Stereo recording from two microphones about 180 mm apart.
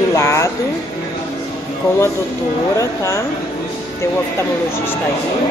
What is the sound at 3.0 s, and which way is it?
Speech, 15° left (ahead or behind).